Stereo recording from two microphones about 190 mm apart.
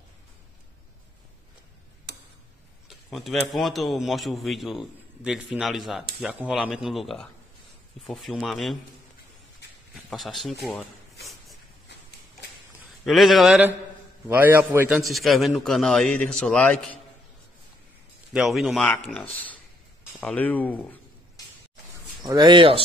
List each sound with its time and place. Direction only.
2.9 s speech: centre (ahead or behind)
10.0 s speech: centre (ahead or behind)
13.0 s a man's voice: centre (ahead or behind)
15.0 s speech: centre (ahead or behind)
18.3 s speech: centre (ahead or behind)
20.2 s speech: 10° left (ahead or behind)
22.2 s speech: 20° right (ahead or behind)